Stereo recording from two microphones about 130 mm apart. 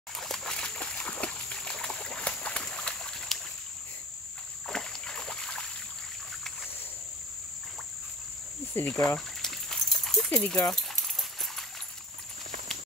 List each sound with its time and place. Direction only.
0.2 s splash: 5° left (ahead or behind)
4.6 s boat: 5° left (ahead or behind)
8.7 s speech: 15° left (ahead or behind)
9.4 s a sound: 5° left (ahead or behind)
10.3 s speech: 10° left (ahead or behind)
10.7 s dog: 5° left (ahead or behind)